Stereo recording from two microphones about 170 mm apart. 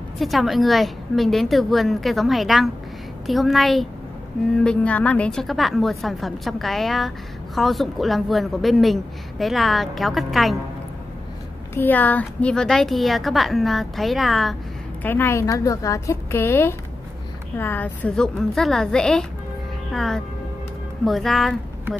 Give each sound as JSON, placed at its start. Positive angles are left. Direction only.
{"t": 0.2, "sound": "a woman's voice", "side_deg": 0}
{"t": 11.7, "sound": "a woman's voice", "side_deg": 10}
{"t": 15.0, "sound": "a woman's voice", "side_deg": 15}